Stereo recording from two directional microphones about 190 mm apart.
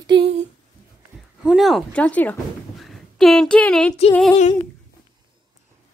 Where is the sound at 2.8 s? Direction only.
Centre (ahead or behind).